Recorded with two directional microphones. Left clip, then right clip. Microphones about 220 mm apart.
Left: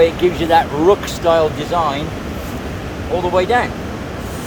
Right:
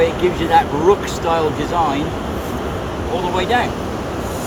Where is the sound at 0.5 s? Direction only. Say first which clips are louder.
Left 1 dB; 35° left (ahead or behind).